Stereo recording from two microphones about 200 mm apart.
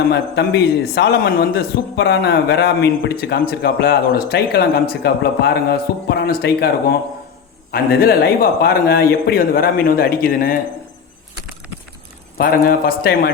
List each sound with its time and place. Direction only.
0.1 s a man's voice: 60° left (ahead or behind)
12.4 s a man's voice: 45° left (ahead or behind)